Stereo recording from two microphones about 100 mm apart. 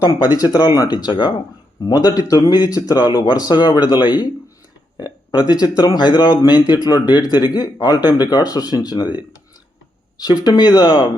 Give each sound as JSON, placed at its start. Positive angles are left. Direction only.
{"t": 0.0, "sound": "speech", "side_deg": 40}